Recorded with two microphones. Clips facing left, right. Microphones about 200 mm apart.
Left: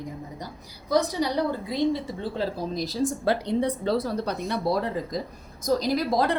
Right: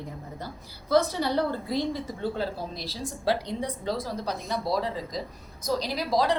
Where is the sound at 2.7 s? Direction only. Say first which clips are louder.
Left 9 dB; 45° left (ahead or behind).